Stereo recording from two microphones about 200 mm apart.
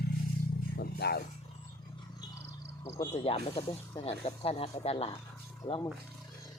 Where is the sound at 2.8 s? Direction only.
15° left (ahead or behind).